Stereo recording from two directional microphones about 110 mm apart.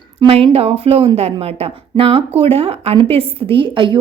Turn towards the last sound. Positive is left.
turn(degrees=-50)  # may be behind; listen again after turning